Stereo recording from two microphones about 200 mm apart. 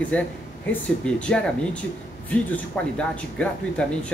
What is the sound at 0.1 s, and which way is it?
Speech, 5° left (ahead or behind).